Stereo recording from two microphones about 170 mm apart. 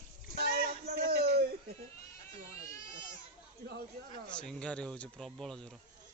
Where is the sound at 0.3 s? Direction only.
60° right (ahead or behind).